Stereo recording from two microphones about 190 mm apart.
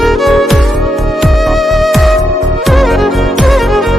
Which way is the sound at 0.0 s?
Centre (ahead or behind).